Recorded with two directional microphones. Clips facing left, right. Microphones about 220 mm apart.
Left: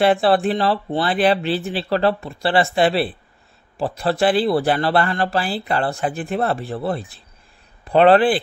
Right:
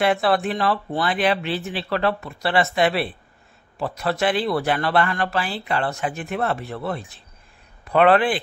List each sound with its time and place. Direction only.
0.0 s speech: 30° left (ahead or behind)